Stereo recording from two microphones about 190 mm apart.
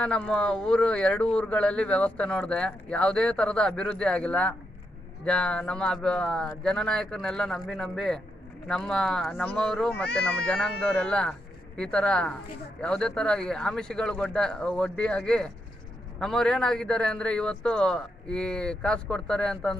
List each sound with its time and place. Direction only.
0.0 s speech: 5° left (ahead or behind)